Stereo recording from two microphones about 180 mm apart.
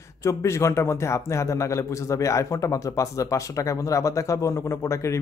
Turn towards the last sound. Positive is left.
turn(degrees=15)  # may be behind; listen again after turning